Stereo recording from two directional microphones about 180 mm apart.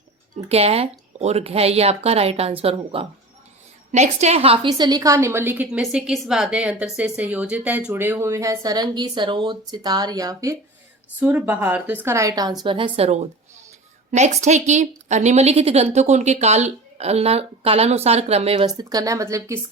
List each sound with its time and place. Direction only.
0.3 s a woman's voice: 35° right (ahead or behind)
18.8 s a woman's voice: 20° right (ahead or behind)